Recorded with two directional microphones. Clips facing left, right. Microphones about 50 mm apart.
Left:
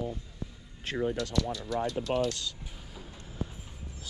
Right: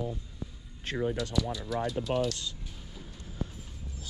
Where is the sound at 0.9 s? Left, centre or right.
Left.